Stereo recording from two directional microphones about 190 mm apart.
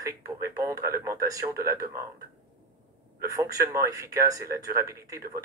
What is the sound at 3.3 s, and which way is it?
Speech, 15° right (ahead or behind).